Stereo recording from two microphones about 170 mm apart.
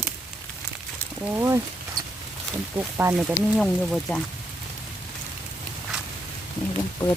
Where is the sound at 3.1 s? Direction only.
5° right (ahead or behind).